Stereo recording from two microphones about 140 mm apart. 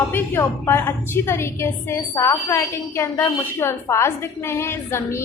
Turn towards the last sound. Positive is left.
turn(degrees=20)  # may be behind; listen again after turning